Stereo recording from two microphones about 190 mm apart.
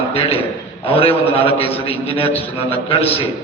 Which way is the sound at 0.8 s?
30° left (ahead or behind).